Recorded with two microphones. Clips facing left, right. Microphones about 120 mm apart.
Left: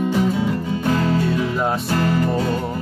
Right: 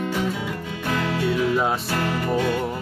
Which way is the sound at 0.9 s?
35° left (ahead or behind).